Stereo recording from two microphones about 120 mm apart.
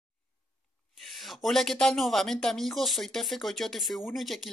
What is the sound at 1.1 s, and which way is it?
Speech, centre (ahead or behind).